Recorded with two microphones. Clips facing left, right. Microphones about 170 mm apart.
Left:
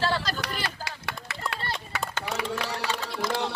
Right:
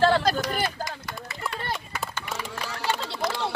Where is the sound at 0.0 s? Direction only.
55° right (ahead or behind).